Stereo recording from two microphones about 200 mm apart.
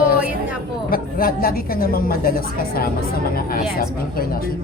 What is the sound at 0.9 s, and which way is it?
A woman's voice, 45° left (ahead or behind).